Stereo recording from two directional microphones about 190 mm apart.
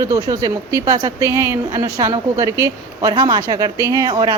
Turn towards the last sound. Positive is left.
turn(degrees=-20)  # may be behind; listen again after turning